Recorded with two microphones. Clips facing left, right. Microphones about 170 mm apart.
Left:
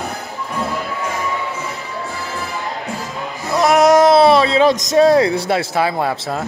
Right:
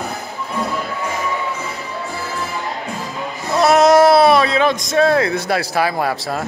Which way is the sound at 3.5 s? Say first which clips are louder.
Even; 15° left (ahead or behind).